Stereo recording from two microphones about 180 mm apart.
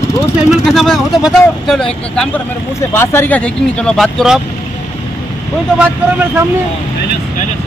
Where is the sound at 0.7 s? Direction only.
Centre (ahead or behind).